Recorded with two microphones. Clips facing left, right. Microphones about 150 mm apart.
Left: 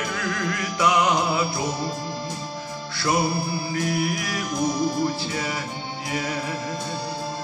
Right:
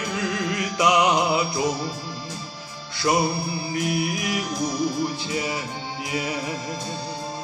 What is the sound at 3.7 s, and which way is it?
Music, 20° right (ahead or behind).